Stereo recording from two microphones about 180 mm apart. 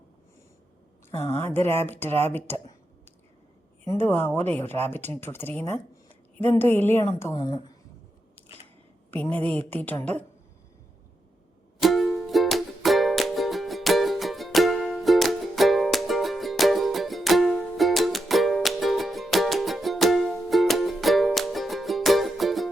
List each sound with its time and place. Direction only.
1.3 s speech: 10° left (ahead or behind)
3.8 s speech: 10° left (ahead or behind)
7.3 s a woman's voice: 25° left (ahead or behind)
9.3 s speech: 10° left (ahead or behind)
11.8 s music: centre (ahead or behind)